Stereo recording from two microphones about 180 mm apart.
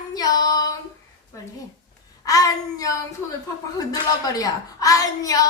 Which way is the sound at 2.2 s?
20° left (ahead or behind).